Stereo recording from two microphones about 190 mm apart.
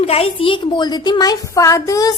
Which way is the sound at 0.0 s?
30° left (ahead or behind).